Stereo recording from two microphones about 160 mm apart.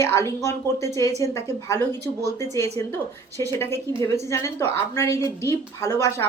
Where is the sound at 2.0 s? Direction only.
90° right.